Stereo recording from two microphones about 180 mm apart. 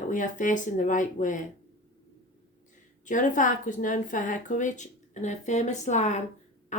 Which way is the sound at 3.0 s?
45° left (ahead or behind).